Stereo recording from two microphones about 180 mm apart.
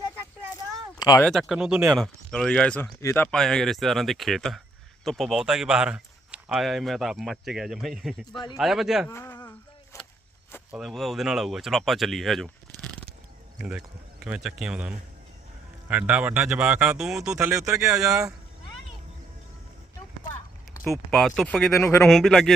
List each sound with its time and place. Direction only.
0.5 s a sound: 20° left (ahead or behind)
1.2 s speech: centre (ahead or behind); by 3.2 s 15° left (ahead or behind)
3.3 s speech: 5° left (ahead or behind)
9.0 s speech: 15° left (ahead or behind)
9.9 s a sound: 15° left (ahead or behind)
10.7 s speech: centre (ahead or behind)
13.6 s speech: 5° right (ahead or behind)
17.5 s speech: 20° right (ahead or behind)
17.7 s speech: 5° right (ahead or behind)
20.9 s speech: centre (ahead or behind)
21.8 s speech: 15° left (ahead or behind)
22.0 s speech: centre (ahead or behind)